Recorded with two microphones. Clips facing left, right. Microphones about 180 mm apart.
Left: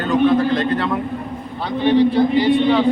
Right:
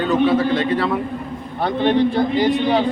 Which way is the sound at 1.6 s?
50° right (ahead or behind).